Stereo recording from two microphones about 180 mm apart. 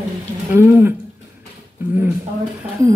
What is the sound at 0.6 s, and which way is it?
Speech, 10° right (ahead or behind).